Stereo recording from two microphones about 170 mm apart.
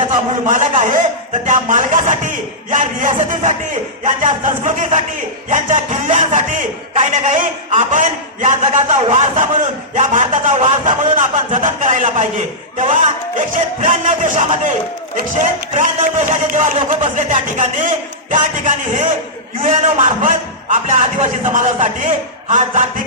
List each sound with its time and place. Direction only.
0.4 s a man's voice: 50° right (ahead or behind)
15.7 s a man's voice: 45° right (ahead or behind)